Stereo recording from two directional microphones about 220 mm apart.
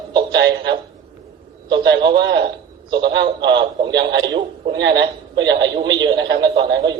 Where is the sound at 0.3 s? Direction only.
50° right (ahead or behind).